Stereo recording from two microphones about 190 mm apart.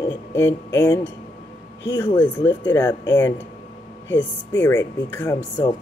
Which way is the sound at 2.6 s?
20° left (ahead or behind).